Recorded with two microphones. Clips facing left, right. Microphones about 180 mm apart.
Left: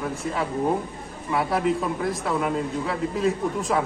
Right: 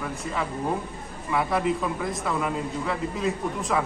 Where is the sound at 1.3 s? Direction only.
Centre (ahead or behind).